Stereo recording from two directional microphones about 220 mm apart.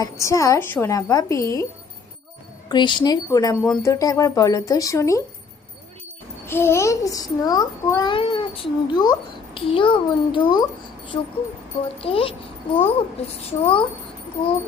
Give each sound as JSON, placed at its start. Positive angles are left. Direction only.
{"t": 0.0, "sound": "a child's voice", "side_deg": 15}
{"t": 2.6, "sound": "a child's voice", "side_deg": 20}
{"t": 6.4, "sound": "a child's voice", "side_deg": 10}